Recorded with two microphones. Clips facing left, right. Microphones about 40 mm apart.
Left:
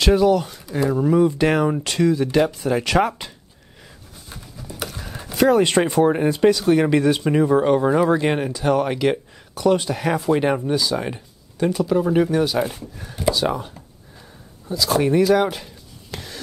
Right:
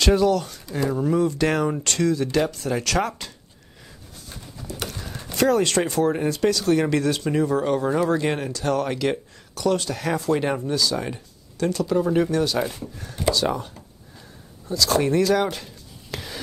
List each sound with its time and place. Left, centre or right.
0.0 s speech: centre
4.7 s speech: centre